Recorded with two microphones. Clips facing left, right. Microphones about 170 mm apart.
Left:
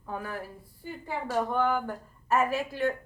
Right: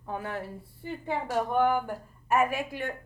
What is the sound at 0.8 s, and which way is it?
Speech, 15° right (ahead or behind).